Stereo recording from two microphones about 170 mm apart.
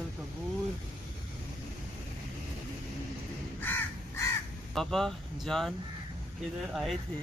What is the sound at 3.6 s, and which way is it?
Crow, 15° left (ahead or behind).